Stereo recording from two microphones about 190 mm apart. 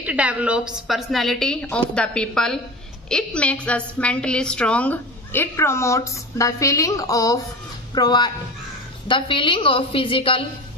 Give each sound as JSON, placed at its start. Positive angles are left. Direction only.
{"t": 0.0, "sound": "a woman's voice", "side_deg": -5}